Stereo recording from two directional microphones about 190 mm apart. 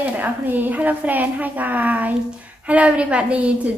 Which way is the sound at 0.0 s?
10° right (ahead or behind).